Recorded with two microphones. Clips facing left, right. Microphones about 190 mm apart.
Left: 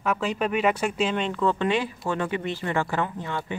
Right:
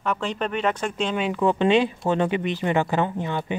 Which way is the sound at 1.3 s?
15° right (ahead or behind).